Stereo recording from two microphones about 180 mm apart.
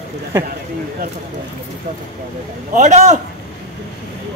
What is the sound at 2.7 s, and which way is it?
Speech, 40° right (ahead or behind).